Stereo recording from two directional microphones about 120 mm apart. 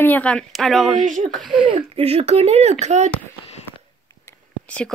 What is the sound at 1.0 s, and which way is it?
Speech, 90° right.